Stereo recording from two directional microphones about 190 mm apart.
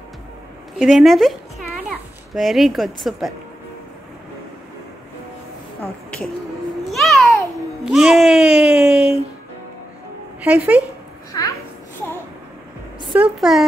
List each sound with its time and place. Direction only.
0.7 s a child's voice: centre (ahead or behind)
5.8 s a sound: 5° left (ahead or behind)
6.9 s babbling: centre (ahead or behind)
7.8 s speech: centre (ahead or behind)
10.4 s speech: 10° right (ahead or behind)
11.3 s a child's voice: 20° left (ahead or behind)
13.1 s speech: 5° right (ahead or behind)